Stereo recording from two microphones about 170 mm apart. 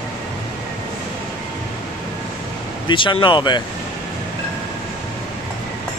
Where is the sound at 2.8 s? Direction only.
30° left (ahead or behind).